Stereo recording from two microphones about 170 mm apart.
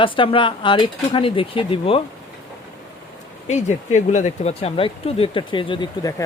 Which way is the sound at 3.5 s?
45° left (ahead or behind).